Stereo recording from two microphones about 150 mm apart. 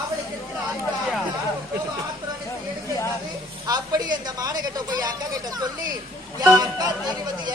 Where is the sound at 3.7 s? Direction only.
25° right (ahead or behind).